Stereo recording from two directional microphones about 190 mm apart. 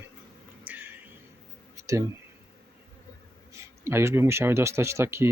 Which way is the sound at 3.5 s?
15° right (ahead or behind).